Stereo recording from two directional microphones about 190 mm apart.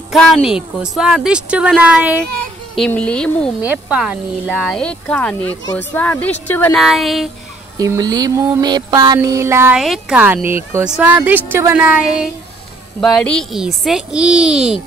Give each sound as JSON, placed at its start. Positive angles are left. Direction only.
{"t": 0.1, "sound": "speech", "side_deg": 0}
{"t": 2.7, "sound": "speech", "side_deg": 5}
{"t": 3.6, "sound": "speech", "side_deg": -5}
{"t": 6.8, "sound": "speech", "side_deg": 0}
{"t": 7.7, "sound": "a sound", "side_deg": -20}
{"t": 9.8, "sound": "speech", "side_deg": 0}
{"t": 13.0, "sound": "speech", "side_deg": 5}